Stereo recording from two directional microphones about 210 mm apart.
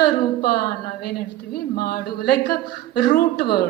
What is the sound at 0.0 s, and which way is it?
A woman's voice, 45° left (ahead or behind).